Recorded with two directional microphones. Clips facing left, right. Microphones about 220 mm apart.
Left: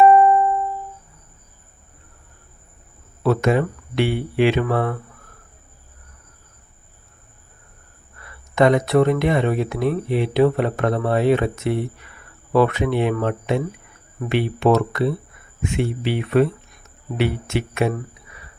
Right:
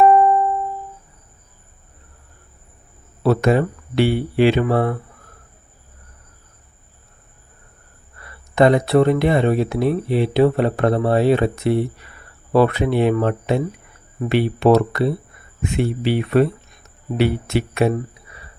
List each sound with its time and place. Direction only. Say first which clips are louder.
0.0 s music: even; 5° left (ahead or behind)
3.2 s speech: right 2 dB; 35° right (ahead or behind)
8.5 s speech: right 2 dB; 35° right (ahead or behind)